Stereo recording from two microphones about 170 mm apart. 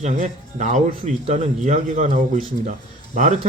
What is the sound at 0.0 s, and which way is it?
Speech, 45° right (ahead or behind).